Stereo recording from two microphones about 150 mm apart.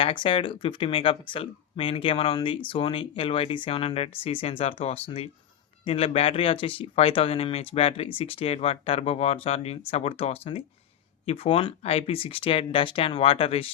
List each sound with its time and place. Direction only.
0.0 s speech: 35° left (ahead or behind)